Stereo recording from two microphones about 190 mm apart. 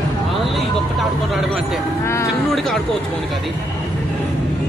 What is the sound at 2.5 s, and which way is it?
Speech, centre (ahead or behind).